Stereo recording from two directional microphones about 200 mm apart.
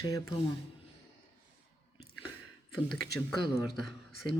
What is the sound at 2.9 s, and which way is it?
Speech, centre (ahead or behind).